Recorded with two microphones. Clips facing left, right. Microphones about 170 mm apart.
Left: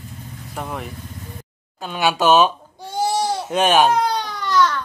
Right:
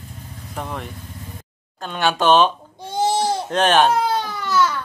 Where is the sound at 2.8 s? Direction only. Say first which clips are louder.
Right 1 dB; 20° right (ahead or behind).